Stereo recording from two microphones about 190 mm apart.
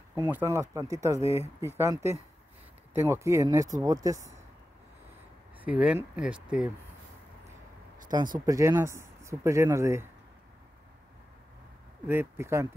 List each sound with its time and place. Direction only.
0.3 s speech: 10° right (ahead or behind)
5.6 s speech: 5° right (ahead or behind)
8.1 s speech: 20° right (ahead or behind)
12.1 s speech: 10° right (ahead or behind)